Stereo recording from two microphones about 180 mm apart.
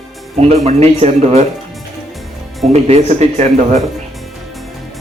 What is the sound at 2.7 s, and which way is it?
A man's voice, 35° right (ahead or behind).